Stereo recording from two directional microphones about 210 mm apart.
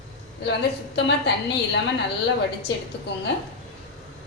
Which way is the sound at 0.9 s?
55° left (ahead or behind).